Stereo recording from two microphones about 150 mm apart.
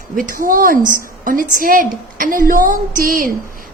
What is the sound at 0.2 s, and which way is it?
A woman's voice, 65° right (ahead or behind).